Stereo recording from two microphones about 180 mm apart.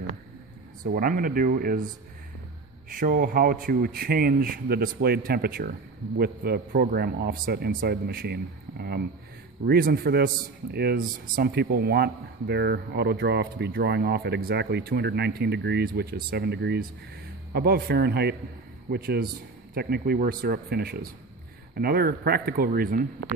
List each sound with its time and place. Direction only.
0.9 s speech: 50° right (ahead or behind)
2.9 s a man's voice: 50° right (ahead or behind)